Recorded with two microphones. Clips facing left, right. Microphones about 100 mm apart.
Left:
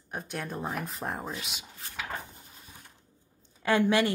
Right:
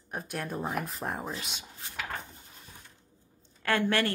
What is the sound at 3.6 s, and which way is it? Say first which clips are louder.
Speech: left 3 dB; 15° left (ahead or behind).